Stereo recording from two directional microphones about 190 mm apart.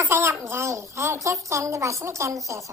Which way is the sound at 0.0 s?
15° right (ahead or behind).